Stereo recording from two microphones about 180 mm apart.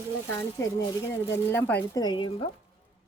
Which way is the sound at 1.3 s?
10° left (ahead or behind).